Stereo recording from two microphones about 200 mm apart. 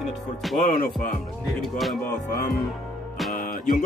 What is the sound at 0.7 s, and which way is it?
Speech, 40° left (ahead or behind).